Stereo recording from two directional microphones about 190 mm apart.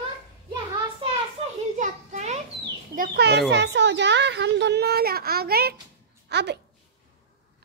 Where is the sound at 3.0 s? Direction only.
60° right (ahead or behind).